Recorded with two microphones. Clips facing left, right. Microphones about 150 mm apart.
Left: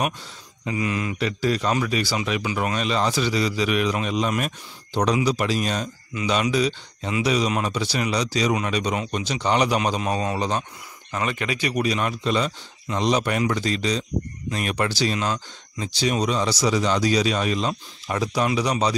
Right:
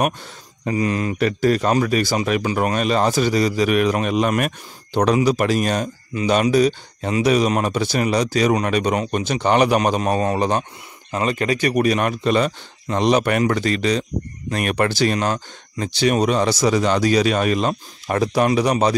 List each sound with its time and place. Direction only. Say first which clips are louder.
0.7 s a man's voice: right 5 dB; 40° right (ahead or behind)
11.1 s speech: right 6 dB; 35° right (ahead or behind); by 18.9 s 55° right (ahead or behind)